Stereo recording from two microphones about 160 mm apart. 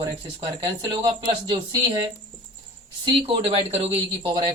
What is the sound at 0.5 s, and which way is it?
Speech, 30° right (ahead or behind).